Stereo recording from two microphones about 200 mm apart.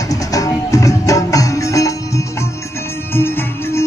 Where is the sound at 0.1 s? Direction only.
15° left (ahead or behind).